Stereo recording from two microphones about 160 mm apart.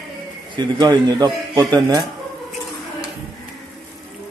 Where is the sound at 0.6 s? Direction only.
25° right (ahead or behind).